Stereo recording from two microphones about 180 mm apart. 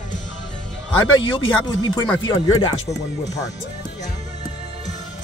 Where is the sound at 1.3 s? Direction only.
30° left (ahead or behind).